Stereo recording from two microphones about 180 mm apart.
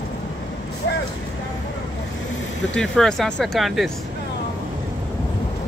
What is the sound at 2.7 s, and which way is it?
Speech, 5° left (ahead or behind).